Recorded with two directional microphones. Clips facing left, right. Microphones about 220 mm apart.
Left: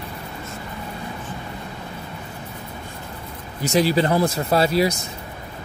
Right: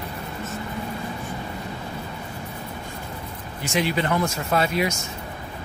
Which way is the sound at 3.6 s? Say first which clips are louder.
Left 5 dB; 35° left (ahead or behind).